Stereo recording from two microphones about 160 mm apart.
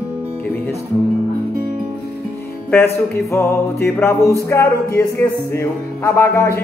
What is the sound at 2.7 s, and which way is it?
Speech, 15° left (ahead or behind).